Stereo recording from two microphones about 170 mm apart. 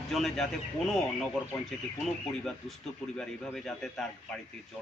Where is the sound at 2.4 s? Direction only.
Centre (ahead or behind).